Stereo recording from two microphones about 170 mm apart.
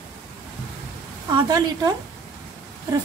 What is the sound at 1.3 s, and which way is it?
Speech, 20° right (ahead or behind).